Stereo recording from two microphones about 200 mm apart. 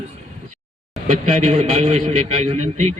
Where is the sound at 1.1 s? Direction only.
30° right (ahead or behind).